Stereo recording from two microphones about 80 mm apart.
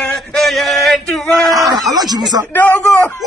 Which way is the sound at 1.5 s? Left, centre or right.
Right.